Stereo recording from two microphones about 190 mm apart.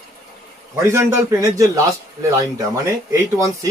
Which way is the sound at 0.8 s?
15° right (ahead or behind).